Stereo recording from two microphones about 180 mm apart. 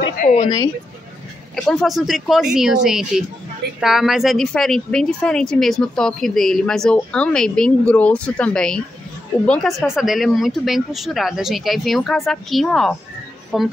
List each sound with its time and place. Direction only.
0.2 s speech: 40° left (ahead or behind)
1.5 s speech: centre (ahead or behind)